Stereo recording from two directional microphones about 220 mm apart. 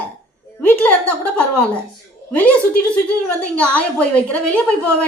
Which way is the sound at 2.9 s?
5° left (ahead or behind).